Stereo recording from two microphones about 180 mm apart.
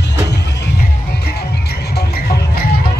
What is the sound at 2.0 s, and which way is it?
Music, 60° left (ahead or behind).